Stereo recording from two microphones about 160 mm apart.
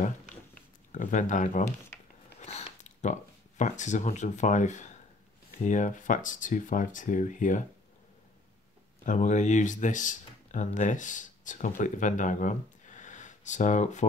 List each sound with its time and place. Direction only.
0.9 s speech: 50° left (ahead or behind)
9.0 s speech: 50° left (ahead or behind)